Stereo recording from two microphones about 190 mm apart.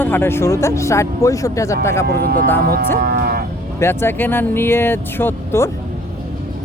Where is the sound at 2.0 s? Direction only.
55° right (ahead or behind).